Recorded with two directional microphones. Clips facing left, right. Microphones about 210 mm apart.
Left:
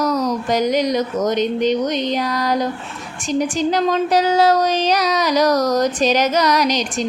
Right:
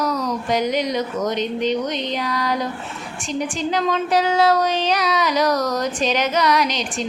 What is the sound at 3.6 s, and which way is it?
Speech, 40° left (ahead or behind).